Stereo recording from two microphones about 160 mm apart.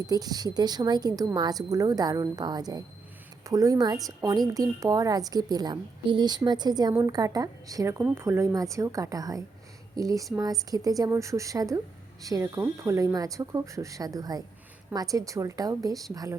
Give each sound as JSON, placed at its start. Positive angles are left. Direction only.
{"t": 0.1, "sound": "a woman's voice", "side_deg": -25}